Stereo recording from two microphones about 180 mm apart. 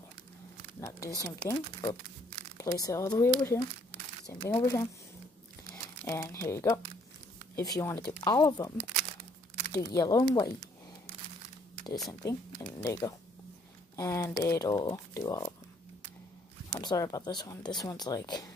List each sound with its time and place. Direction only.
0.7 s speech: 15° left (ahead or behind)
4.3 s speech: 20° left (ahead or behind)
6.0 s speech: 15° left (ahead or behind)
12.1 s speech: 20° left (ahead or behind)
16.7 s speech: 20° left (ahead or behind)